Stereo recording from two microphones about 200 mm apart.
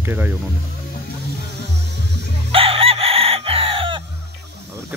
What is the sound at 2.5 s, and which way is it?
Chicken, 30° right (ahead or behind).